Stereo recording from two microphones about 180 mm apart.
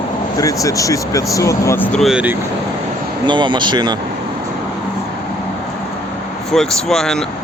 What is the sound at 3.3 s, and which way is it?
Speech, 25° right (ahead or behind).